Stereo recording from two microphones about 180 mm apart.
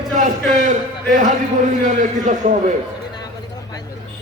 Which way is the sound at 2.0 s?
45° right (ahead or behind).